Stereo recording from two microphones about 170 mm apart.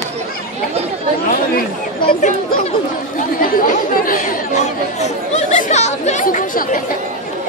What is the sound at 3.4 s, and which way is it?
Chatter, 55° left (ahead or behind).